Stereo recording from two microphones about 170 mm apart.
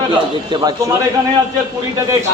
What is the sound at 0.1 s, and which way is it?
Speech, 30° right (ahead or behind).